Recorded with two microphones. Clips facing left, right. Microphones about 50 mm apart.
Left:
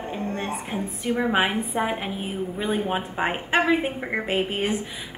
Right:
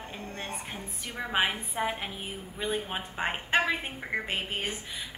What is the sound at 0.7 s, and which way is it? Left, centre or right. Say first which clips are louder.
A woman's voice: left 12 dB; centre.